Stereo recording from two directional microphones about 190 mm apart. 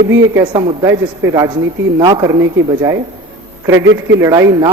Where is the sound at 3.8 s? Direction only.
75° right (ahead or behind).